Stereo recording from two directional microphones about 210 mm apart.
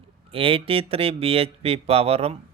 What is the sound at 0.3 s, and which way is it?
Speech, 25° right (ahead or behind).